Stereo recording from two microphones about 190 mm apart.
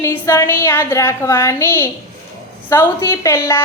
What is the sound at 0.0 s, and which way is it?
A woman's voice, 15° left (ahead or behind).